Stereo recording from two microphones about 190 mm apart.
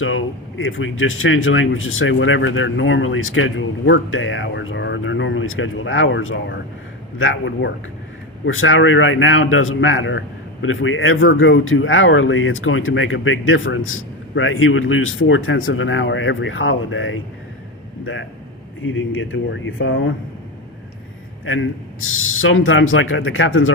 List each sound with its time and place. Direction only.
0.0 s a man's voice: 90° left
21.4 s a man's voice: 90° left